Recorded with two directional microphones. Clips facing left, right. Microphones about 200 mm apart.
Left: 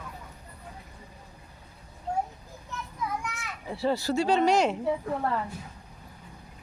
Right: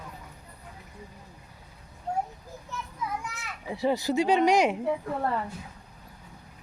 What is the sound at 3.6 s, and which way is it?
A woman's voice, 15° right (ahead or behind).